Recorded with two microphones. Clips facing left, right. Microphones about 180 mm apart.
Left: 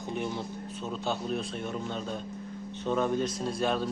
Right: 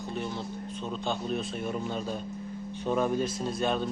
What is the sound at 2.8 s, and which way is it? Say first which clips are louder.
Speech: right 1 dB; 10° right (ahead or behind).